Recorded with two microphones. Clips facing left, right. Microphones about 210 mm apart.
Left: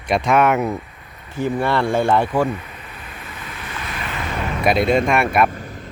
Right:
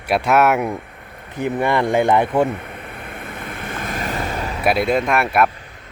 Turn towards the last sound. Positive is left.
turn(degrees=0)  # may be behind; listen again after turning